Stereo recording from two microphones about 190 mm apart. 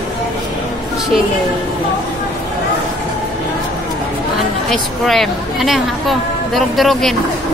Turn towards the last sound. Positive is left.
turn(degrees=0)  # may be behind; listen again after turning